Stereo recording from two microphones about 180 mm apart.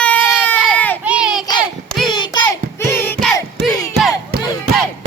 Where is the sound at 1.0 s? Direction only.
5° right (ahead or behind).